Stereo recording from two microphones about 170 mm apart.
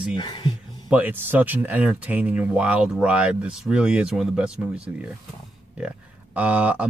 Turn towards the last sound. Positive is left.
turn(degrees=-10)  # may be behind; listen again after turning